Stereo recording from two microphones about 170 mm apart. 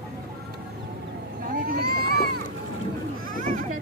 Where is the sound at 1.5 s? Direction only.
60° right (ahead or behind).